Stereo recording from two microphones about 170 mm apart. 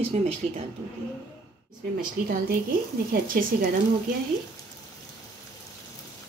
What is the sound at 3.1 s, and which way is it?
Speech, 55° right (ahead or behind).